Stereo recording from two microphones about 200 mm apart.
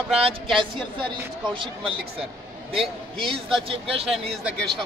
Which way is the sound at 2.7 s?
25° right (ahead or behind).